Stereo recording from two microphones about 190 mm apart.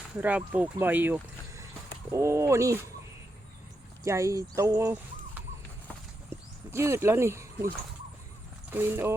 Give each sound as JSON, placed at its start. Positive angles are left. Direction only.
{"t": 0.2, "sound": "speech", "side_deg": -10}
{"t": 4.0, "sound": "speech", "side_deg": -15}
{"t": 6.3, "sound": "speech", "side_deg": -15}
{"t": 8.7, "sound": "speech", "side_deg": -10}